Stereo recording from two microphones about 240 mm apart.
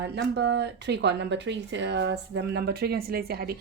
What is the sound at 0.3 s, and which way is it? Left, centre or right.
Speech, right.